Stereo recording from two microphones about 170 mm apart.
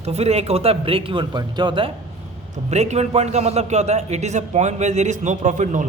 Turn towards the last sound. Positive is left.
turn(degrees=-45)  # may be behind; listen again after turning